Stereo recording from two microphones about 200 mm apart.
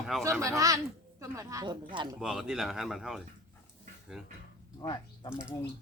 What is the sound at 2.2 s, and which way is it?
Speech, 5° right (ahead or behind).